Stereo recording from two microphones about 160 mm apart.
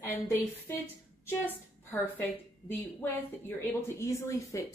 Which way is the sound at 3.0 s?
15° left (ahead or behind).